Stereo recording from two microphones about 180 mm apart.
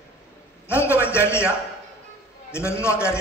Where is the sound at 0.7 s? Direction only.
15° left (ahead or behind).